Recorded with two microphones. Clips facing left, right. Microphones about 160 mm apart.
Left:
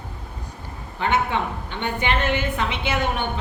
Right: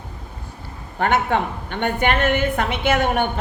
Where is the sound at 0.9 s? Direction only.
50° right (ahead or behind).